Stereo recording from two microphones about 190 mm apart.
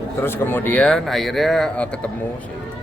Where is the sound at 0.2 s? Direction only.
10° left (ahead or behind).